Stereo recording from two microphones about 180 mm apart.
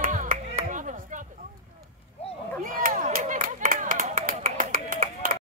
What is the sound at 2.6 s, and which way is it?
Clapping, 50° right (ahead or behind).